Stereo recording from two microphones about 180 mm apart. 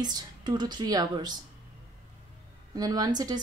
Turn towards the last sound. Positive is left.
turn(degrees=-20)  # may be behind; listen again after turning